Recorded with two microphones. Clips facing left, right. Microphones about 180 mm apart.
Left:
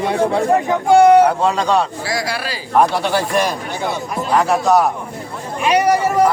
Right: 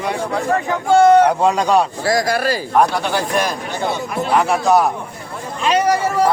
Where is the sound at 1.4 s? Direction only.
10° right (ahead or behind).